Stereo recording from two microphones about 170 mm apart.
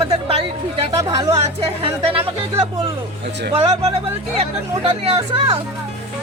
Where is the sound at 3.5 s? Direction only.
35° right (ahead or behind).